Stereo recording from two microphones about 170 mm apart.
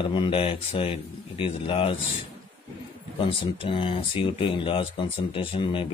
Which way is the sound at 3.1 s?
30° left (ahead or behind).